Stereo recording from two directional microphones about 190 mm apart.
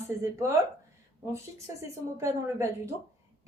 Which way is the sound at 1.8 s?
15° right (ahead or behind).